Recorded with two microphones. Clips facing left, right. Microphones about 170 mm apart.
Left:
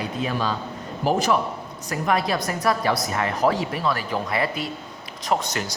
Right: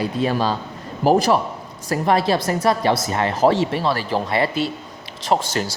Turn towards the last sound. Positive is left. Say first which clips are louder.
# right 4 dB
turn(degrees=-30)  # may be behind; listen again after turning